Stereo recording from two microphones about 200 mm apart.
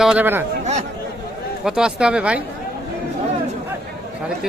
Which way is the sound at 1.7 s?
5° right (ahead or behind).